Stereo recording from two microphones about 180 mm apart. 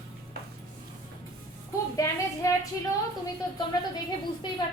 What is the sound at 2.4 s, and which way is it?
Speech, 15° left (ahead or behind).